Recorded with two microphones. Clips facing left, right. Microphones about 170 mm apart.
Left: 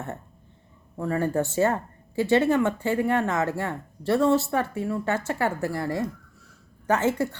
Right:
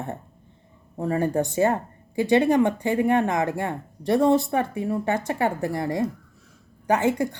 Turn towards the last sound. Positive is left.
turn(degrees=-15)  # may be behind; listen again after turning